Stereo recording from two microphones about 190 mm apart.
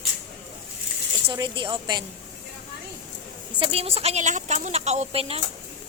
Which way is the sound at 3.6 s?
30° right (ahead or behind).